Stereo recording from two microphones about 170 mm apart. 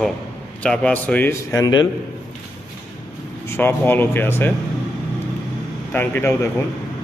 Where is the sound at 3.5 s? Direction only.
15° left (ahead or behind).